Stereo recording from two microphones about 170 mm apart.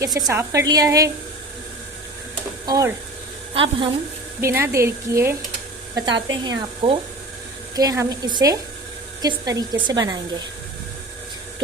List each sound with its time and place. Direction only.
0.0 s a woman's voice: 20° right (ahead or behind)
2.6 s a woman's voice: 20° right (ahead or behind)
4.4 s a woman's voice: 15° right (ahead or behind)
5.9 s a woman's voice: 25° right (ahead or behind)
7.8 s a woman's voice: 20° right (ahead or behind)